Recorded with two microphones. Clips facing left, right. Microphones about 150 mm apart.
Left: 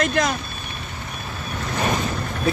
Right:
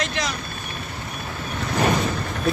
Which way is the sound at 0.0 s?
50° left (ahead or behind).